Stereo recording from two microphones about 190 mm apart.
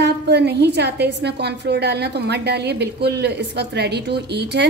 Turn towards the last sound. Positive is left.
turn(degrees=-60)  # may be behind; listen again after turning